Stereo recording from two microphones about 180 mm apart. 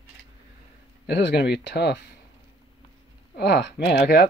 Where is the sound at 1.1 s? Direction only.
70° left (ahead or behind).